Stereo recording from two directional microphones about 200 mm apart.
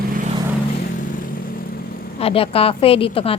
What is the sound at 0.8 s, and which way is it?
Vehicle, 45° left (ahead or behind).